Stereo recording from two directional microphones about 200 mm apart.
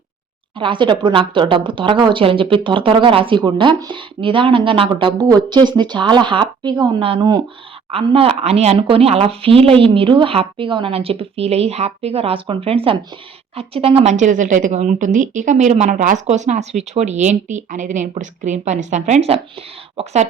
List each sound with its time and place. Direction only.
0.5 s speech: 25° right (ahead or behind)